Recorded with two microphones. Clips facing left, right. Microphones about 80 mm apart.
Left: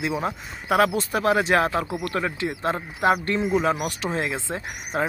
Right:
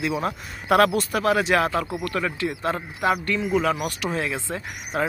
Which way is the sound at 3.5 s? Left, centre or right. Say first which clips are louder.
Right 2 dB; centre.